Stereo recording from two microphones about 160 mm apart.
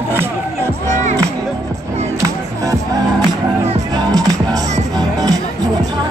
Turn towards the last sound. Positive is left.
turn(degrees=-25)  # may be behind; listen again after turning